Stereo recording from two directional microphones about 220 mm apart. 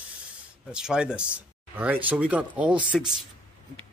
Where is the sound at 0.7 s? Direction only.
5° right (ahead or behind).